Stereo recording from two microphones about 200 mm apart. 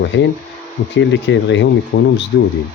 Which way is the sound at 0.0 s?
65° left (ahead or behind).